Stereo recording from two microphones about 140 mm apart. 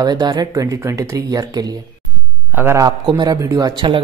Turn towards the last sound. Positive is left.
turn(degrees=-35)  # may be behind; listen again after turning